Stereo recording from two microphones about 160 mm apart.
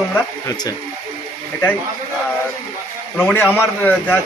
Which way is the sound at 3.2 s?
10° left (ahead or behind).